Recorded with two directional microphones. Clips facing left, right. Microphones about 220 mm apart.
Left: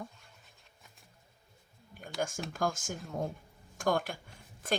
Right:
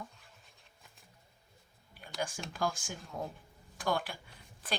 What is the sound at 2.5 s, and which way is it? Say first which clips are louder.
Speech: left 2 dB; 45° left (ahead or behind).